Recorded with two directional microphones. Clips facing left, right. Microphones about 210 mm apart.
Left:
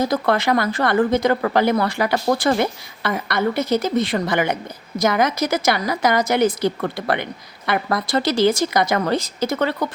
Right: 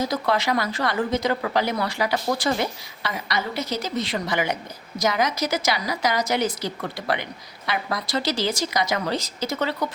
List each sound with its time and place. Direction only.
0.0 s a woman's voice: 55° left (ahead or behind)